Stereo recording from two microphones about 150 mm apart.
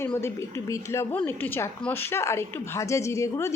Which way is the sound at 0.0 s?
15° left (ahead or behind).